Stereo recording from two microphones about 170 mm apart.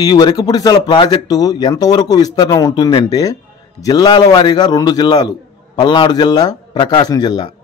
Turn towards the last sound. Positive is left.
turn(degrees=25)  # may be behind; listen again after turning